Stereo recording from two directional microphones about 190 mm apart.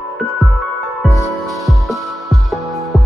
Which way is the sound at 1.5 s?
Centre (ahead or behind).